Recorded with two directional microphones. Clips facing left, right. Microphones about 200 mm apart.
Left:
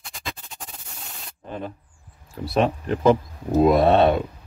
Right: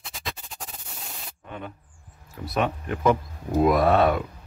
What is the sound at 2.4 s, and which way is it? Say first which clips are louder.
Speech: left 5 dB; 30° left (ahead or behind).